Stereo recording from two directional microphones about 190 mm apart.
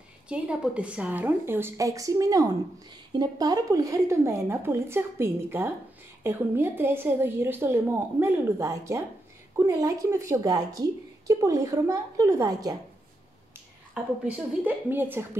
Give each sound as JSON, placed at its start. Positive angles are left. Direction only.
{"t": 0.3, "sound": "a woman's voice", "side_deg": -5}
{"t": 14.2, "sound": "a woman's voice", "side_deg": -5}